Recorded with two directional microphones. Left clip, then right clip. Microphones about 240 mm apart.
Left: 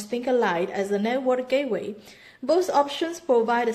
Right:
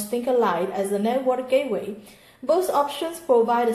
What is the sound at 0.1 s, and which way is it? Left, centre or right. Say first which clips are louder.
A woman's voice: right 2 dB; left.